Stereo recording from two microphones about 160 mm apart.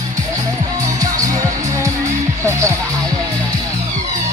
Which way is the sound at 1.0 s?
20° right (ahead or behind).